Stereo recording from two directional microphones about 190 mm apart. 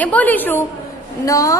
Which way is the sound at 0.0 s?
10° left (ahead or behind).